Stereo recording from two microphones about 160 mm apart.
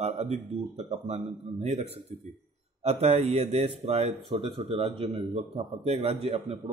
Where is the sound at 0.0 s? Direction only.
40° right (ahead or behind).